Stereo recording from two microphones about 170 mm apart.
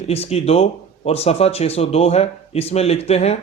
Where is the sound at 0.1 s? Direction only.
35° left (ahead or behind).